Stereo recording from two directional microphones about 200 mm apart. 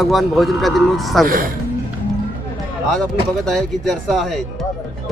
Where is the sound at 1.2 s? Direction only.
45° right (ahead or behind).